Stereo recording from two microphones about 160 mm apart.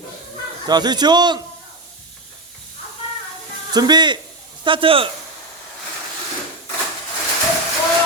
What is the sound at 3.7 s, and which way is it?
A man's voice, 25° right (ahead or behind).